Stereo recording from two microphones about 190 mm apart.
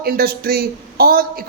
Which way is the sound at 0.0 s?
55° right (ahead or behind).